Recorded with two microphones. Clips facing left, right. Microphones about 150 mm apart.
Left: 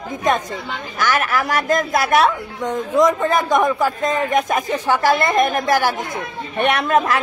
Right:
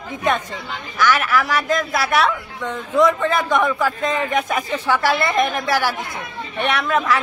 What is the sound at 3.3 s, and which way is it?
A woman's voice, 40° left (ahead or behind).